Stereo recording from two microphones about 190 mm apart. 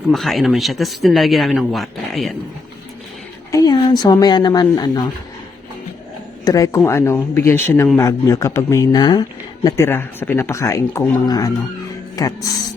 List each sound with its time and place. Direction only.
0.1 s speech: centre (ahead or behind)
3.5 s speech: 20° left (ahead or behind)
6.4 s speech: 20° left (ahead or behind)